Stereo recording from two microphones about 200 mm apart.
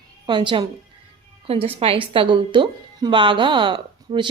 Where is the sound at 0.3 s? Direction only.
25° right (ahead or behind).